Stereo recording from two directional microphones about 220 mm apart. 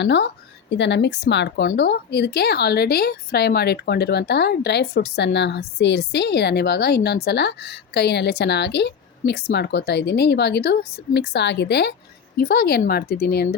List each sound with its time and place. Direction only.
0.0 s a woman's voice: 50° left (ahead or behind)